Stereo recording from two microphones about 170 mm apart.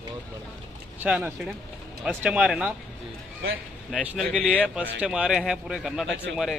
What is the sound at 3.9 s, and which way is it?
Speech, centre (ahead or behind).